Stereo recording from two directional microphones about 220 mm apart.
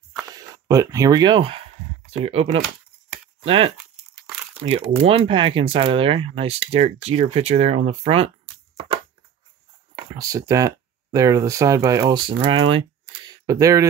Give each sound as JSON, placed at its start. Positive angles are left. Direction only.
{"t": 0.3, "sound": "a sound", "side_deg": -15}
{"t": 2.1, "sound": "speech", "side_deg": -25}
{"t": 5.0, "sound": "speech", "side_deg": -25}
{"t": 10.1, "sound": "speech", "side_deg": -15}